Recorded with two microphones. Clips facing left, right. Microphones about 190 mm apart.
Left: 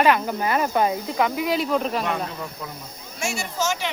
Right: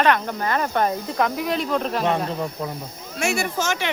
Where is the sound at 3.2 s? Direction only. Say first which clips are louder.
Right 3 dB; 60° right (ahead or behind).